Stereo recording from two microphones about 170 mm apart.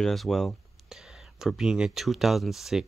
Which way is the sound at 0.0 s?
Centre (ahead or behind).